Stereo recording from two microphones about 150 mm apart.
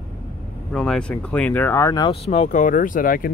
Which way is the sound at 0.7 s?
5° left (ahead or behind).